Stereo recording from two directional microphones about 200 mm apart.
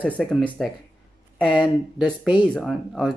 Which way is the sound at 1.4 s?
25° left (ahead or behind).